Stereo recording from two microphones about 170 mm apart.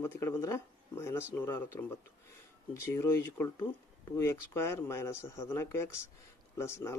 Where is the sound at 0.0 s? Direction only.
15° left (ahead or behind).